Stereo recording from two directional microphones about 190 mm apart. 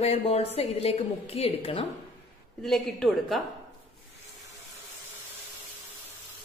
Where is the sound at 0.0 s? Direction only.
35° left (ahead or behind).